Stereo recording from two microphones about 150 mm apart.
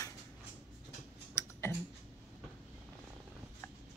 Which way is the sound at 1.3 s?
15° left (ahead or behind).